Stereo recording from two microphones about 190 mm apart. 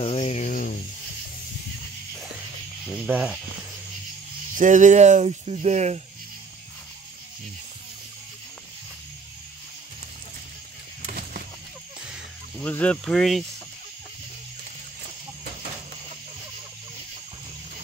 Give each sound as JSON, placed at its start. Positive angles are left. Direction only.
{"t": 0.0, "sound": "a sound", "side_deg": 30}
{"t": 2.9, "sound": "speech", "side_deg": -5}
{"t": 4.6, "sound": "speech", "side_deg": -40}
{"t": 12.1, "sound": "snake", "side_deg": 5}